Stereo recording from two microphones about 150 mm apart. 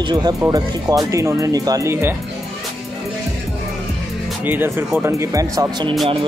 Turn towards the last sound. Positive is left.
turn(degrees=-20)  # may be behind; listen again after turning